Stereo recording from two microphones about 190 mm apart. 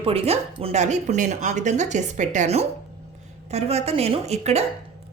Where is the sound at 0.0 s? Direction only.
30° right (ahead or behind).